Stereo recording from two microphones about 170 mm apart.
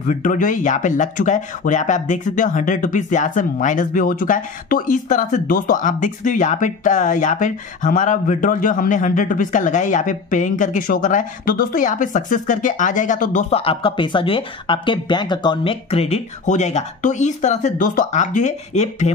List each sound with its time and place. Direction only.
0.0 s speech: 50° left (ahead or behind)